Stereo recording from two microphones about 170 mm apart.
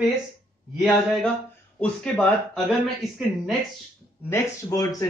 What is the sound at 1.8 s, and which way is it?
Speech, 5° left (ahead or behind).